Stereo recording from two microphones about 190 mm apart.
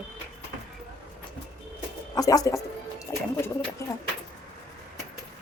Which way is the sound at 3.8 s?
15° left (ahead or behind).